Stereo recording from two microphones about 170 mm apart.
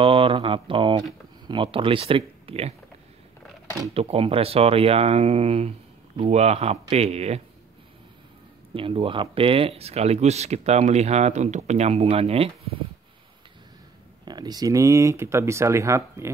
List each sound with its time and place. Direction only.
0.0 s a sound: 30° right (ahead or behind)
1.5 s speech: 30° right (ahead or behind)
3.9 s speech: 35° right (ahead or behind)
8.7 s speech: 30° right (ahead or behind)
14.2 s speech: 25° right (ahead or behind)